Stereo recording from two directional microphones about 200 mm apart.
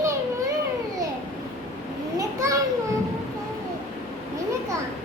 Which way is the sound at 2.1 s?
15° right (ahead or behind).